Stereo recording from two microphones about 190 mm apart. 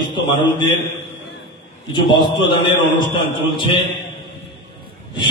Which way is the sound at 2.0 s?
25° left (ahead or behind).